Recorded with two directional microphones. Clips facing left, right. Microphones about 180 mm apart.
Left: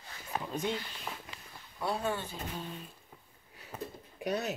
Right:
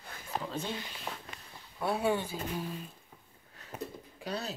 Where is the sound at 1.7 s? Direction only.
5° right (ahead or behind).